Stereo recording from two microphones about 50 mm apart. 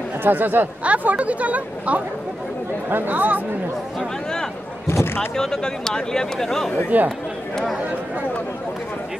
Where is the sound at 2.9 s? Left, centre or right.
Right.